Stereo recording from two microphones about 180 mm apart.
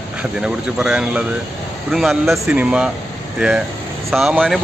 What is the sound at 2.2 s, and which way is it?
Speech, 10° right (ahead or behind).